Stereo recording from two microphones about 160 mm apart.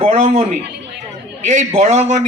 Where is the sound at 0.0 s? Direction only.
40° right (ahead or behind).